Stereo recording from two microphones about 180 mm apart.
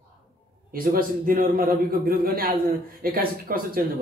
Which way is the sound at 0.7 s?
55° right (ahead or behind).